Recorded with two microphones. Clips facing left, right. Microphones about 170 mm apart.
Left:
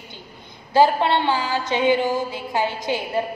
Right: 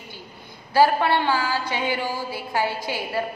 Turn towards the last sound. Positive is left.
turn(degrees=20)  # may be behind; listen again after turning